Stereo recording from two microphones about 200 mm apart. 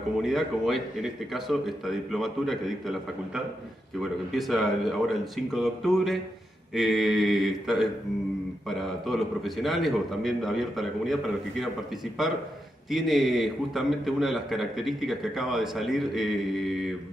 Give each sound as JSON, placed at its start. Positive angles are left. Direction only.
{"t": 0.2, "sound": "a man's voice", "side_deg": 0}
{"t": 12.9, "sound": "a man's voice", "side_deg": 0}